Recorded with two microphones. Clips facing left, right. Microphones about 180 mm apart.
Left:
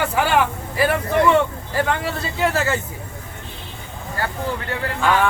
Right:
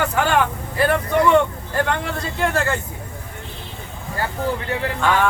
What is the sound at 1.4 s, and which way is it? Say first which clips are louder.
Speech: right 1 dB; 5° left (ahead or behind).